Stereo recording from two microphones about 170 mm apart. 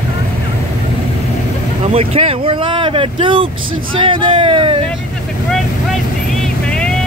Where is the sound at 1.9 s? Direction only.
35° right (ahead or behind).